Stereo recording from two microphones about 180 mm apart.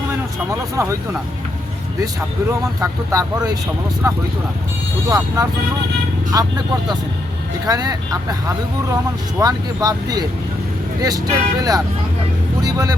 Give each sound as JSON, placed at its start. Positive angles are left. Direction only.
{"t": 0.8, "sound": "speech", "side_deg": -15}
{"t": 2.5, "sound": "speech", "side_deg": -15}
{"t": 7.7, "sound": "speech", "side_deg": -20}